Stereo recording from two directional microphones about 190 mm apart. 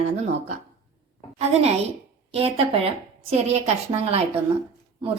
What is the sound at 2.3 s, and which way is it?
A woman's voice, 30° right (ahead or behind).